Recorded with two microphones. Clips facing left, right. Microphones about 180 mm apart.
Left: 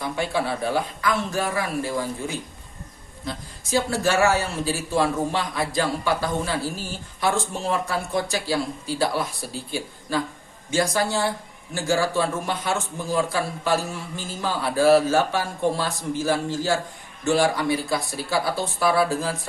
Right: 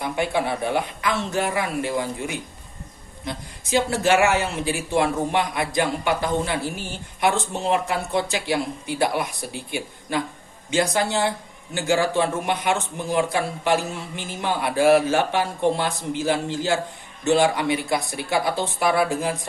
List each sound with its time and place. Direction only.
0.0 s a man's voice: 20° right (ahead or behind)